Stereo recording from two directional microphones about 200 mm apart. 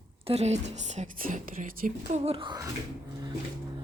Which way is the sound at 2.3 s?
25° right (ahead or behind).